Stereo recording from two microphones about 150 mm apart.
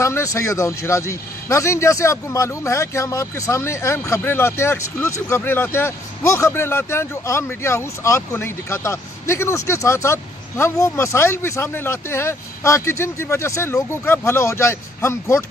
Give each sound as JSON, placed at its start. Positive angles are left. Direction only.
{"t": 0.0, "sound": "a man's voice", "side_deg": 20}